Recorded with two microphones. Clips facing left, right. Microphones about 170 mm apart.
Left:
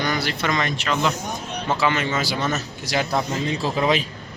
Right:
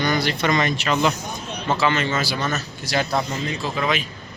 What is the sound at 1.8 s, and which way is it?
A man's voice, 10° left (ahead or behind).